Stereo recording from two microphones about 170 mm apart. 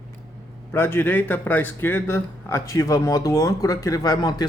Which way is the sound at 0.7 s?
15° left (ahead or behind).